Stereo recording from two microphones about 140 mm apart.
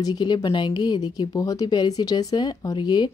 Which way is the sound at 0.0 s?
30° left (ahead or behind).